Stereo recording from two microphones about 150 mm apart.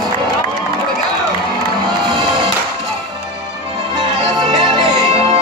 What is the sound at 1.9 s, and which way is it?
Music, 30° right (ahead or behind).